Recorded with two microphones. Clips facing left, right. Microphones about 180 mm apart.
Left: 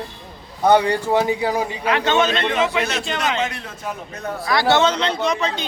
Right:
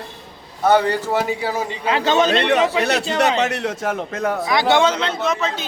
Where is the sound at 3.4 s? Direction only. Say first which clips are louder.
Right 5 dB; 70° right (ahead or behind); by 4.4 s 85° right.